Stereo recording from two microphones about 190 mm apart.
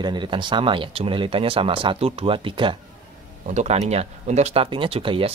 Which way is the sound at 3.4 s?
35° right (ahead or behind).